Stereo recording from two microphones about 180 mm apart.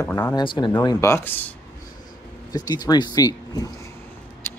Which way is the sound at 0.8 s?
15° left (ahead or behind).